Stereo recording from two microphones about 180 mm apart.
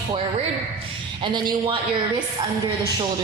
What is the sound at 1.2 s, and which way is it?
Music, 25° right (ahead or behind).